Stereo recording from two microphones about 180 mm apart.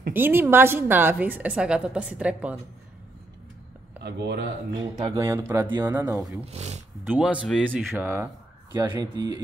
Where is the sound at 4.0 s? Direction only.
70° right (ahead or behind).